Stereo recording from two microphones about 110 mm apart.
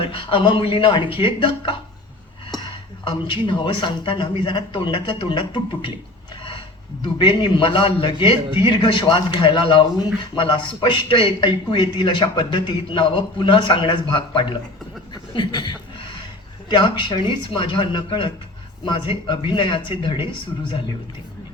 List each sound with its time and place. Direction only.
0.0 s a man's voice: 50° left (ahead or behind)
7.2 s a man's voice: 45° left (ahead or behind)